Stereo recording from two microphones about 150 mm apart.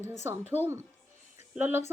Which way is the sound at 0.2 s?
15° right (ahead or behind).